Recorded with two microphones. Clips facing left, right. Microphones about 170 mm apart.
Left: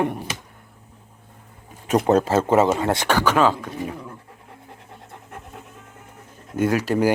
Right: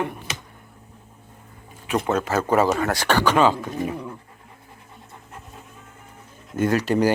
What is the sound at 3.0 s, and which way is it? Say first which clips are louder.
Speech: right 1 dB; 10° left (ahead or behind).